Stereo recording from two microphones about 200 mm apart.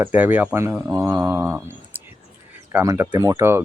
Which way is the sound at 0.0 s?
10° right (ahead or behind).